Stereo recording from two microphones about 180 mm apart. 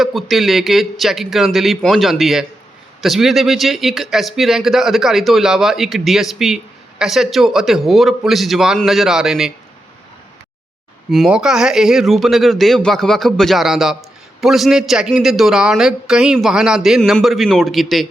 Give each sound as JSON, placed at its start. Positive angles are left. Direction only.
{"t": 0.0, "sound": "speech", "side_deg": 0}
{"t": 11.1, "sound": "speech", "side_deg": 0}